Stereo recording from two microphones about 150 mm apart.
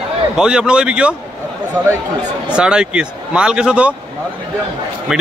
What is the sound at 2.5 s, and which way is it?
Speech, 5° right (ahead or behind).